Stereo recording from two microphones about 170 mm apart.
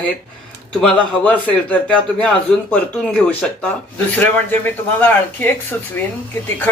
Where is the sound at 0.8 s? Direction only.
5° left (ahead or behind).